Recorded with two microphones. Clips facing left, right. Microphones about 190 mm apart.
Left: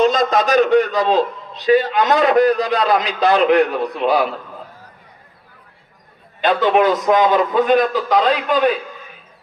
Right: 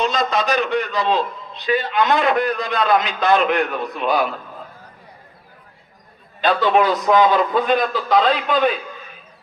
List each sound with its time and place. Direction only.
0.0 s a man's voice: 45° left (ahead or behind)
6.4 s a man's voice: 20° left (ahead or behind)